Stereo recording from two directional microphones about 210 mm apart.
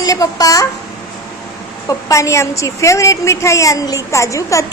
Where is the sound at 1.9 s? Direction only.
15° left (ahead or behind).